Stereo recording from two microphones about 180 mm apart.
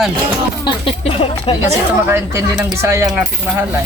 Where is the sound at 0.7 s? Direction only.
30° left (ahead or behind).